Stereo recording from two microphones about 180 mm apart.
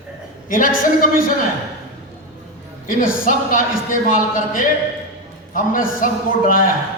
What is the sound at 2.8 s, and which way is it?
A man's voice, 50° left (ahead or behind).